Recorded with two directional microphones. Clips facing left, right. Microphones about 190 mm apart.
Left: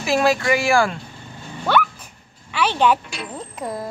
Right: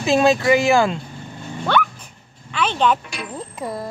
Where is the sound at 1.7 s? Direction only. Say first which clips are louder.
Left 1 dB; 5° left (ahead or behind).